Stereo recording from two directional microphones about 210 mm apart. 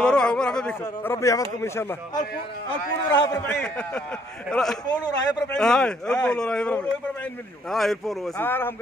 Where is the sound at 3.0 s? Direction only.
20° left (ahead or behind).